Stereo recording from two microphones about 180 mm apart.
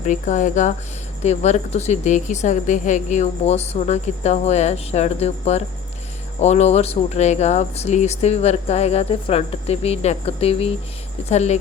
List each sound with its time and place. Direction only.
0.0 s a woman's voice: 40° left (ahead or behind)